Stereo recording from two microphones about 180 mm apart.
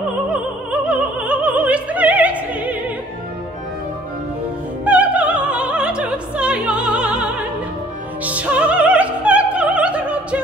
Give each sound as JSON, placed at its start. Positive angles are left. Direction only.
{"t": 0.3, "sound": "opera", "side_deg": -5}
{"t": 4.8, "sound": "opera", "side_deg": -10}
{"t": 8.2, "sound": "music", "side_deg": -10}